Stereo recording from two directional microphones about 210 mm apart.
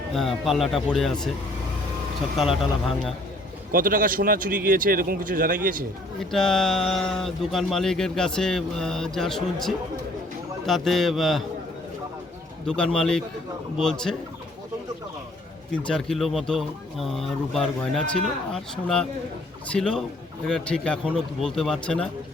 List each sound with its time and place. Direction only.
0.1 s speech: centre (ahead or behind)
2.4 s speech: centre (ahead or behind)
3.7 s a man's voice: 40° right (ahead or behind)
6.1 s speech: centre (ahead or behind)
12.6 s speech: 5° left (ahead or behind)
15.8 s speech: 5° left (ahead or behind)